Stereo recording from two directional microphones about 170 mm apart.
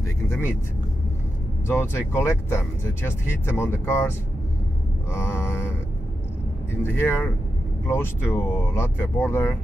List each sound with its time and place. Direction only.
0.0 s vehicle: 15° left (ahead or behind)
1.7 s speech: 15° left (ahead or behind)
3.4 s speech: 15° left (ahead or behind)
5.1 s speech: 15° left (ahead or behind)
6.8 s speech: 15° left (ahead or behind)